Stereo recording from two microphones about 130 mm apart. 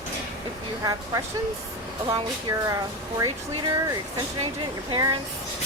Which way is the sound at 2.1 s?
30° right (ahead or behind).